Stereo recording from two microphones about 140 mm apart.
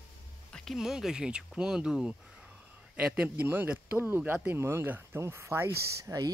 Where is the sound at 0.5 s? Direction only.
Centre (ahead or behind).